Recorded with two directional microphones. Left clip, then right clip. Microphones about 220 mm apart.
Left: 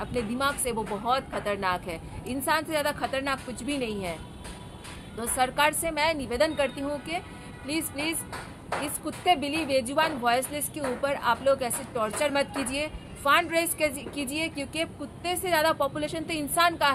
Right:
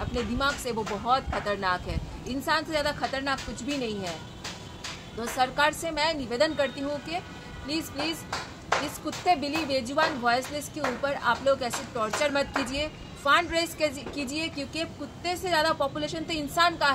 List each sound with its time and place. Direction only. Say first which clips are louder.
0.0 s speech: even; 10° left (ahead or behind)
5.2 s speech: even; 15° left (ahead or behind)